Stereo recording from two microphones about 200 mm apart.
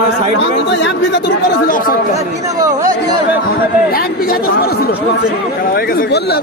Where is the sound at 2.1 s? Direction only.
15° right (ahead or behind).